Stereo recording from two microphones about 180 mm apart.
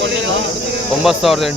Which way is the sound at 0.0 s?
80° right.